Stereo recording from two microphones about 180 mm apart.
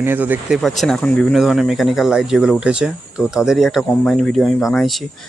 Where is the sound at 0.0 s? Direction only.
10° right (ahead or behind).